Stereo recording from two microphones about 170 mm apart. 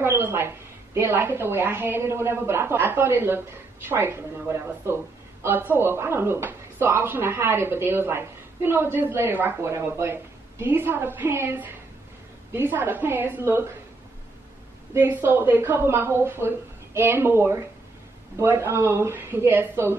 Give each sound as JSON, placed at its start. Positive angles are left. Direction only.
{"t": 0.0, "sound": "a sound", "side_deg": -15}
{"t": 0.9, "sound": "speech", "side_deg": -15}
{"t": 15.0, "sound": "speech", "side_deg": -10}